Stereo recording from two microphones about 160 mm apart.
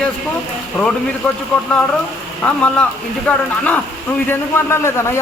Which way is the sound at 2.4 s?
10° left (ahead or behind).